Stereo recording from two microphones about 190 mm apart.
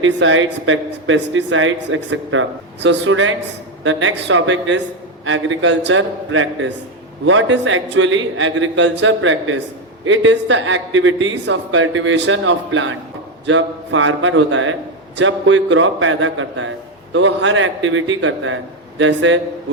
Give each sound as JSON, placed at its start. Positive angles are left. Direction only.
{"t": 0.0, "sound": "a man's voice", "side_deg": -90}